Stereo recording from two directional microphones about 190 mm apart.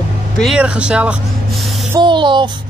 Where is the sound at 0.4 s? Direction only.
5° right (ahead or behind).